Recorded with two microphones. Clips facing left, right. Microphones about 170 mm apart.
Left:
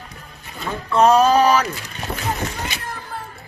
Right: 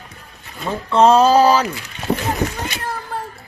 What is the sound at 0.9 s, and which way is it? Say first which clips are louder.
Speech: right 2 dB; 30° right (ahead or behind).